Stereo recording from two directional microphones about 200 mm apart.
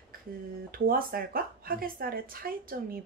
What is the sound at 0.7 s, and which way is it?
Speech, 50° right (ahead or behind).